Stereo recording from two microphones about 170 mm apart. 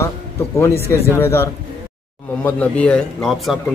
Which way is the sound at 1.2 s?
15° left (ahead or behind).